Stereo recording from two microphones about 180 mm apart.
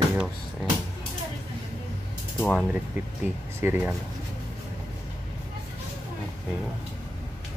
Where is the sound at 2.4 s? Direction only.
5° left (ahead or behind).